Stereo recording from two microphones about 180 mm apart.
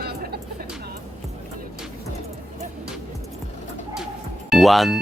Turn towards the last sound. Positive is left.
turn(degrees=0)  # may be behind; listen again after turning